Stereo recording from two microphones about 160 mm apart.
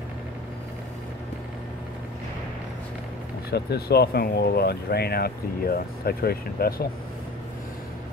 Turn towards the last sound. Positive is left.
turn(degrees=75)  # may be behind; listen again after turning